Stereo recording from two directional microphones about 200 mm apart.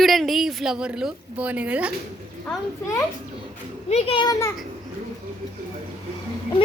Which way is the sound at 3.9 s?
30° left (ahead or behind).